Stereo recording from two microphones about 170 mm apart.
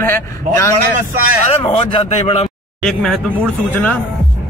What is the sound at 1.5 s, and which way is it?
A man's voice, 35° left (ahead or behind).